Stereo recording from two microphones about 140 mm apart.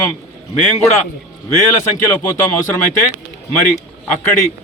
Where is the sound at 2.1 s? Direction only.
15° left (ahead or behind).